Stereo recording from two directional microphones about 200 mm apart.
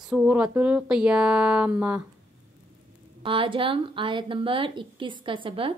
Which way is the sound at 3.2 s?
25° right (ahead or behind).